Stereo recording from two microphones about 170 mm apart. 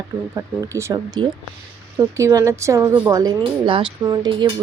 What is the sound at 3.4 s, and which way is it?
Speech, 30° right (ahead or behind).